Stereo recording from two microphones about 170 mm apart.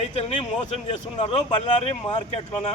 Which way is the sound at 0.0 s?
40° left (ahead or behind).